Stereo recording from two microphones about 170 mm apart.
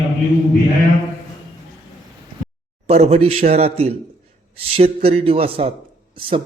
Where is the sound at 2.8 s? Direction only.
35° right (ahead or behind).